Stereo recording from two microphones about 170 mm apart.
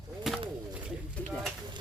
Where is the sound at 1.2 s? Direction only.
10° left (ahead or behind).